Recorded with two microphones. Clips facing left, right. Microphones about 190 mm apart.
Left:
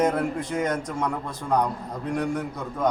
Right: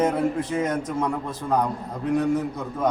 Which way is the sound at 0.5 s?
5° right (ahead or behind).